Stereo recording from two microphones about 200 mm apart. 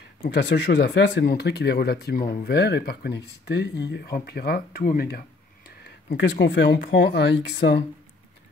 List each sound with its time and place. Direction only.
0.2 s speech: 60° left (ahead or behind)